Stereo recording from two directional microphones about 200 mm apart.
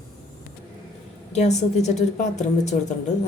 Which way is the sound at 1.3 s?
35° left (ahead or behind).